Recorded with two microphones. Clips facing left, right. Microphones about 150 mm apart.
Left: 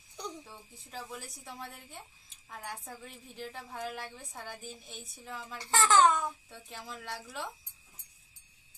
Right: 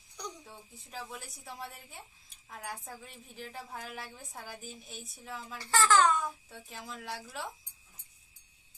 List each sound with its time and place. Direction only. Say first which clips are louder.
0.4 s a woman's voice: even; centre (ahead or behind)
5.5 s speech: left 1 dB; 20° left (ahead or behind)
6.5 s a woman's voice: even; centre (ahead or behind)